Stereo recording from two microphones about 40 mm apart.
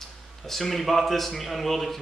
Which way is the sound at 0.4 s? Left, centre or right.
Centre.